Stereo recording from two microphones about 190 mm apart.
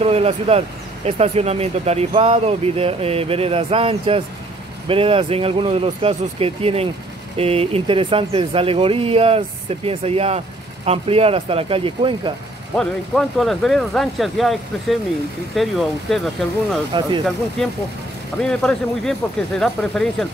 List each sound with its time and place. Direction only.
0.0 s speech: 35° right (ahead or behind)
12.7 s speech: 5° left (ahead or behind)
16.9 s speech: 25° right (ahead or behind)
18.4 s speech: 5° left (ahead or behind)